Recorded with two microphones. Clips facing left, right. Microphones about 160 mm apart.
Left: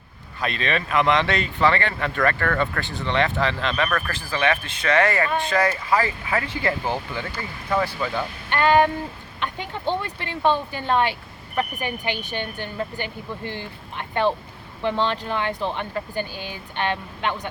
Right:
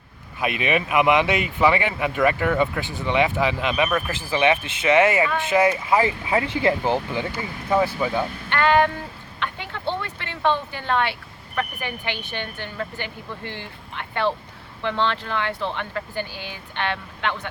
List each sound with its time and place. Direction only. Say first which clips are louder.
0.3 s speech: right 3 dB; 15° right (ahead or behind)
8.4 s speech: left 2 dB; 15° left (ahead or behind)
12.2 s speech: left 2 dB; 15° left (ahead or behind)
16.3 s speech: left 2 dB; 15° right (ahead or behind)
16.8 s speech: left 1 dB; 15° left (ahead or behind)